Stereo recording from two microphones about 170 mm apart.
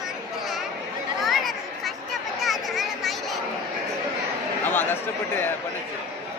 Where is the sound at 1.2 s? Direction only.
Centre (ahead or behind).